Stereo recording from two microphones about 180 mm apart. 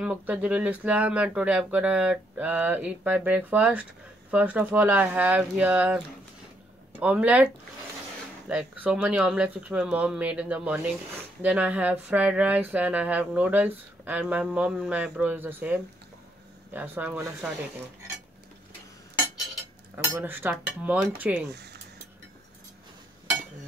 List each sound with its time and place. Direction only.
0.0 s speech: 5° right (ahead or behind)
8.5 s speech: 5° right (ahead or behind)
20.0 s speech: 10° right (ahead or behind)
21.5 s speech: 70° right (ahead or behind)